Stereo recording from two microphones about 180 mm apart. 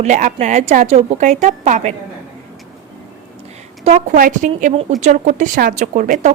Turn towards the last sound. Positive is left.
turn(degrees=-45)  # may be behind; listen again after turning